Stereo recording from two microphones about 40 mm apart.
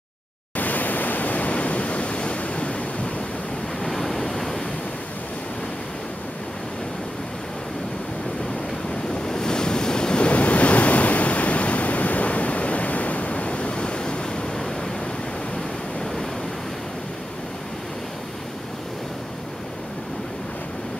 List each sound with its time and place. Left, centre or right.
0.6 s pink noise: left
3.8 s waves: centre
9.2 s waves: centre
10.2 s waves: left